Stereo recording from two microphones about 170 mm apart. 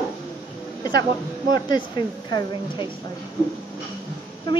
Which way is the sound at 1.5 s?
25° left (ahead or behind).